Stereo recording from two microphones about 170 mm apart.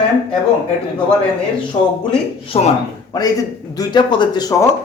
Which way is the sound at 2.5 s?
35° left (ahead or behind).